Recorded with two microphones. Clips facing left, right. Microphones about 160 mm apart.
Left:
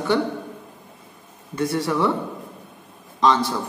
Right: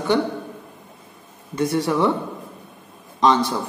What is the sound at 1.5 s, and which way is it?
Speech, 20° right (ahead or behind).